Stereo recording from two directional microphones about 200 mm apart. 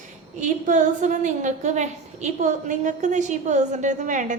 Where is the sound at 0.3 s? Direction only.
40° right (ahead or behind).